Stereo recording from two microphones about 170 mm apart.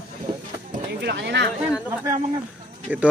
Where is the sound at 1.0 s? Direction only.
90° right.